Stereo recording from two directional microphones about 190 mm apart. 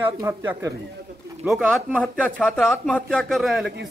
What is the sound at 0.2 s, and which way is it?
Speech, 15° right (ahead or behind).